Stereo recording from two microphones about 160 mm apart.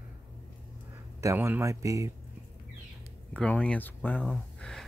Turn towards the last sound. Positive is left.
turn(degrees=5)  # may be behind; listen again after turning